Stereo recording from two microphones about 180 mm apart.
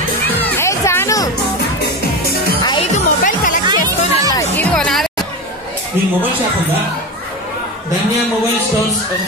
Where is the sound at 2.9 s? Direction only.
45° left (ahead or behind).